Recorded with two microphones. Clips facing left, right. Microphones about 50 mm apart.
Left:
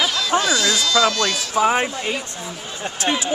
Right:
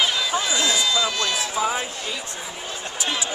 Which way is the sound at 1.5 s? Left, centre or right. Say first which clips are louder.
Left 6 dB; left.